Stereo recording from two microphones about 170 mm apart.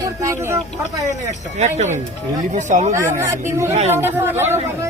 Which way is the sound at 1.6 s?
40° right (ahead or behind).